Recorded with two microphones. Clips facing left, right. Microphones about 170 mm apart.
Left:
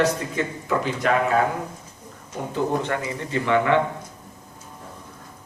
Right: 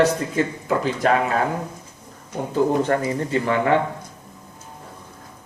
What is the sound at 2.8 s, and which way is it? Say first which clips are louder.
Speech: right 6 dB; 40° right (ahead or behind).